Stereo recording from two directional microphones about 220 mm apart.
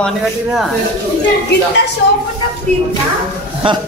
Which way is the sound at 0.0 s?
Centre (ahead or behind).